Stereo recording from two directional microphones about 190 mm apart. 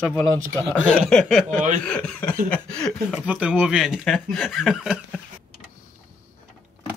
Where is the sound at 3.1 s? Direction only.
5° right (ahead or behind).